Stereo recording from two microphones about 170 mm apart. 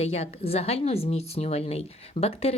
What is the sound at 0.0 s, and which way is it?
A woman's voice, 40° left (ahead or behind).